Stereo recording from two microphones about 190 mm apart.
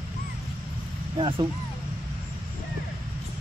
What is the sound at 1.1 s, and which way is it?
Speech, 25° right (ahead or behind).